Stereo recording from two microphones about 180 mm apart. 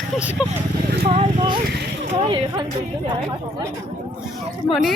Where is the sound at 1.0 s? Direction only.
35° right (ahead or behind).